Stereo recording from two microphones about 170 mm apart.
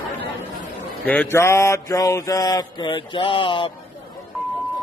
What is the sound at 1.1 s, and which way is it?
Mantra, 10° left (ahead or behind).